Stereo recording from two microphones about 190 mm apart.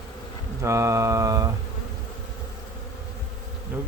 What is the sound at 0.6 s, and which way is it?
Speech, 15° right (ahead or behind).